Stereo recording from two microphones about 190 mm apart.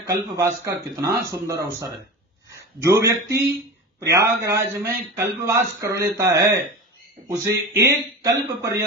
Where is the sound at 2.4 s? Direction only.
15° right (ahead or behind).